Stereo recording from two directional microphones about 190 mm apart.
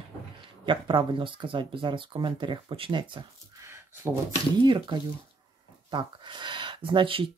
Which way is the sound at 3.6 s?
15° right (ahead or behind).